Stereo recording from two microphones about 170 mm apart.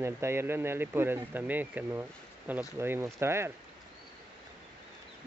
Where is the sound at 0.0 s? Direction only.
15° right (ahead or behind).